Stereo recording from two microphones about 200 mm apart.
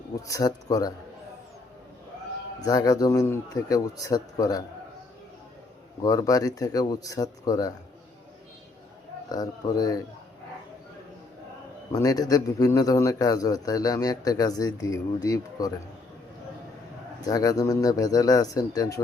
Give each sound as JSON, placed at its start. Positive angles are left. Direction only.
{"t": 0.3, "sound": "speech", "side_deg": 20}
{"t": 2.6, "sound": "a man's voice", "side_deg": 20}
{"t": 6.0, "sound": "a man's voice", "side_deg": 20}
{"t": 9.3, "sound": "speech", "side_deg": 20}
{"t": 11.9, "sound": "a man's voice", "side_deg": 20}
{"t": 17.2, "sound": "a man's voice", "side_deg": 20}